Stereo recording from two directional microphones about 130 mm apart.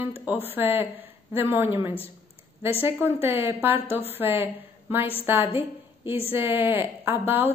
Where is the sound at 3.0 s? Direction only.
15° right (ahead or behind).